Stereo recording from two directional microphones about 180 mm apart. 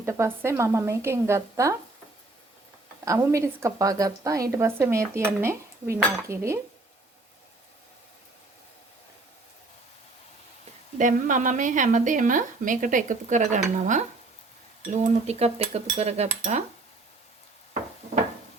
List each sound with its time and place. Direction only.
0.0 s a woman's voice: 15° right (ahead or behind)
3.0 s a woman's voice: 15° right (ahead or behind)
5.4 s dishes: 15° right (ahead or behind)
6.2 s a woman's voice: 15° right (ahead or behind)
10.9 s speech: 45° right (ahead or behind)
14.8 s speech: 35° right (ahead or behind)